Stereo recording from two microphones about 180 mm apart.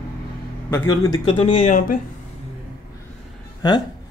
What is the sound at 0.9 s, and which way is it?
Speech, 20° left (ahead or behind).